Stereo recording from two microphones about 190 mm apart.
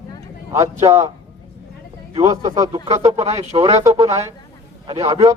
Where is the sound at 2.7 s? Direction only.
35° right (ahead or behind).